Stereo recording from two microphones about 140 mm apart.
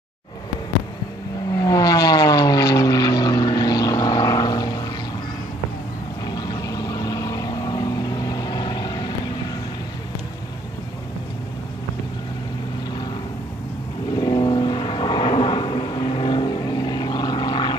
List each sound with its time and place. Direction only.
1.5 s vehicle: 25° left (ahead or behind)
6.3 s vehicle: 30° left (ahead or behind)
14.1 s vehicle: 30° left (ahead or behind)